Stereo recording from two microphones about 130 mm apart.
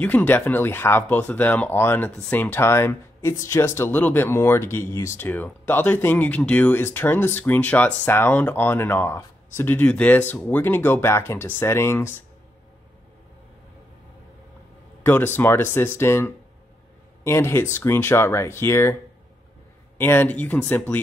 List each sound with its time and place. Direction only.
0.0 s speech: 15° left (ahead or behind)
15.0 s speech: 15° left (ahead or behind)
20.0 s speech: 15° left (ahead or behind)